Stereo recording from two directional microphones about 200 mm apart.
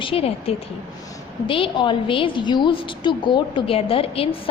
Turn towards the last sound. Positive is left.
turn(degrees=30)  # may be behind; listen again after turning